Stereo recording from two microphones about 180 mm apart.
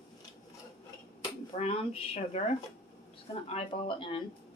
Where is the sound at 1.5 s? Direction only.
30° left (ahead or behind).